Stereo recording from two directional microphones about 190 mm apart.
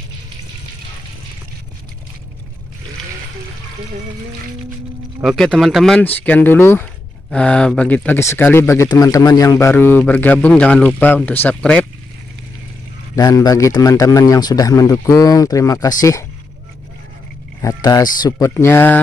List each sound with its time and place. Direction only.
5.2 s speech: centre (ahead or behind)
13.1 s speech: 20° left (ahead or behind)
17.6 s speech: 15° left (ahead or behind)